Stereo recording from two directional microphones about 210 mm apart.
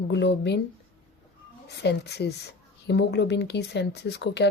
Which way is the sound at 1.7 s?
55° left (ahead or behind).